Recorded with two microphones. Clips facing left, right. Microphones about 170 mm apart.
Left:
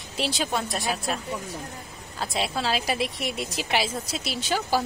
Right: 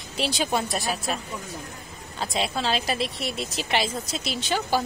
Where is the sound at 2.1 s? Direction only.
5° left (ahead or behind).